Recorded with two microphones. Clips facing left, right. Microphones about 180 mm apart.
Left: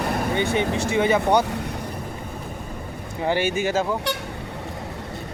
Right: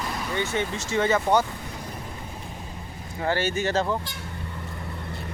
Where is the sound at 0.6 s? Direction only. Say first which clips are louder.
Left 9 dB; 60° left (ahead or behind).